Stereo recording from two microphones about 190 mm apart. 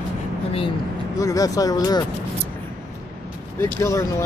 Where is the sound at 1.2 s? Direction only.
15° left (ahead or behind).